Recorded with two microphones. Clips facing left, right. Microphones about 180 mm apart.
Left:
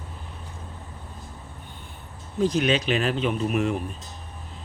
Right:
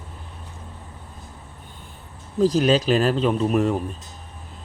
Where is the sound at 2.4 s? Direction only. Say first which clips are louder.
Right 4 dB; 35° right (ahead or behind).